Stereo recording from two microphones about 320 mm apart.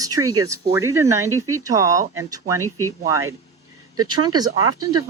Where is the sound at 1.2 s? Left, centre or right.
Right.